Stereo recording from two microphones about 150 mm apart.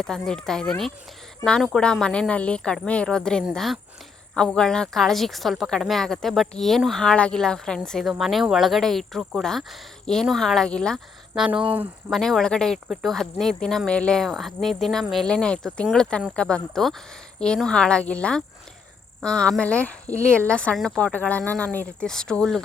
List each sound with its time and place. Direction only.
0.0 s a woman's voice: 5° left (ahead or behind)
11.7 s speech: 10° right (ahead or behind)
12.1 s a woman's voice: centre (ahead or behind)